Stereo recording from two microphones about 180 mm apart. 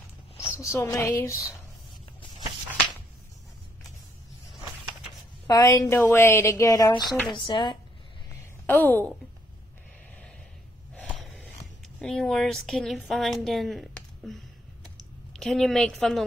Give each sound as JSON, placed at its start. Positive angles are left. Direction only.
{"t": 0.8, "sound": "speech", "side_deg": 15}
{"t": 5.5, "sound": "speech", "side_deg": 20}
{"t": 8.6, "sound": "a woman's voice", "side_deg": 10}
{"t": 11.0, "sound": "a sound", "side_deg": 10}
{"t": 15.3, "sound": "a woman's voice", "side_deg": 0}